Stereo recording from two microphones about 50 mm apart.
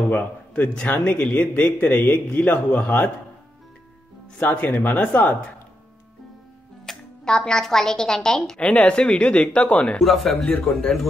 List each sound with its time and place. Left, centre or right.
0.1 s a man's voice: left
4.4 s speech: left
6.9 s a woman's voice: centre
8.5 s a man's voice: left
9.9 s a man's voice: centre